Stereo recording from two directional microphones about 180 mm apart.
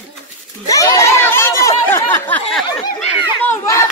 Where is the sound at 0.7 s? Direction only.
20° left (ahead or behind).